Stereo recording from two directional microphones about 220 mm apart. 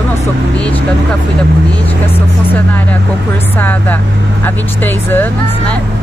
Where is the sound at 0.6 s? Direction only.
5° left (ahead or behind).